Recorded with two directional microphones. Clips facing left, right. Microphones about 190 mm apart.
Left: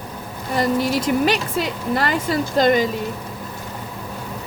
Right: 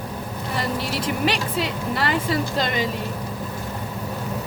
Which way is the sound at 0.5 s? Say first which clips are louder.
Left 8 dB; 45° left (ahead or behind).